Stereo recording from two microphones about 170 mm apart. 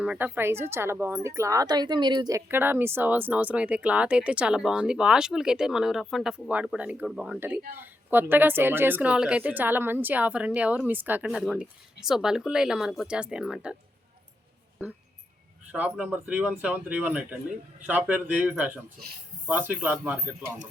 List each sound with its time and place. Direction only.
0.0 s speech: 5° right (ahead or behind)
15.7 s speech: 10° right (ahead or behind)